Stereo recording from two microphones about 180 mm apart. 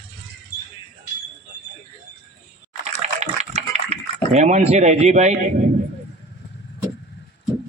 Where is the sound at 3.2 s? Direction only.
40° right (ahead or behind).